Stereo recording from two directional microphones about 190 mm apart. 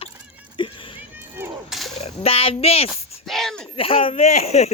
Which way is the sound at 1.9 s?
30° left (ahead or behind).